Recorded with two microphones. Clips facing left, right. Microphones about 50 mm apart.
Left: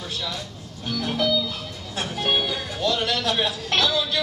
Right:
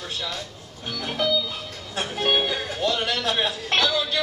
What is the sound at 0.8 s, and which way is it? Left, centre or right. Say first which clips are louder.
Speech: left 2 dB; centre.